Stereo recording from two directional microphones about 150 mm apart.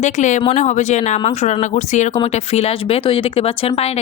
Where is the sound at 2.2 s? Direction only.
40° left (ahead or behind).